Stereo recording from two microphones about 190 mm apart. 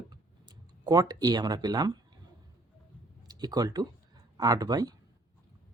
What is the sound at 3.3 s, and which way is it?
Speech, 20° right (ahead or behind).